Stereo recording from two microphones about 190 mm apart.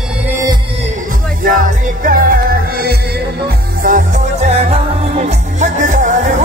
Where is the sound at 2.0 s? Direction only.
50° right (ahead or behind).